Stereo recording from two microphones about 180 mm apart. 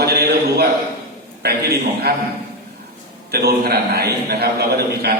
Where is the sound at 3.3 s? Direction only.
60° right (ahead or behind).